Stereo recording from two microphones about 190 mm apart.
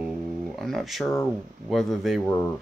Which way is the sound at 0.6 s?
Centre (ahead or behind).